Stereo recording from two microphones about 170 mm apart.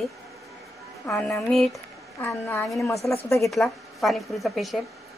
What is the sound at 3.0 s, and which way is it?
A woman's voice, 10° left (ahead or behind).